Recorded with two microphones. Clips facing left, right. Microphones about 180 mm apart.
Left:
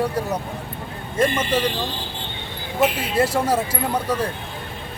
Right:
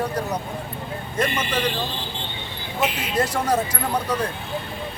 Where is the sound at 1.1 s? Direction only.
30° left (ahead or behind).